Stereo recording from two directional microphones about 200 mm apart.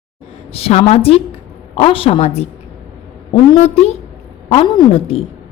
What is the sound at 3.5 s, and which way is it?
A woman's voice, 30° left (ahead or behind).